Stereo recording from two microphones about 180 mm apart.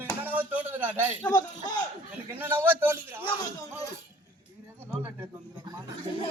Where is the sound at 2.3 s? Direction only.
10° right (ahead or behind).